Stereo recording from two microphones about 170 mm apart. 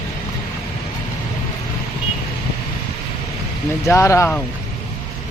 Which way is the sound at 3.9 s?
15° left (ahead or behind).